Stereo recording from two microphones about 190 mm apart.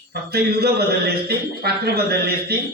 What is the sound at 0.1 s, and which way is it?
A man's voice, 55° right (ahead or behind).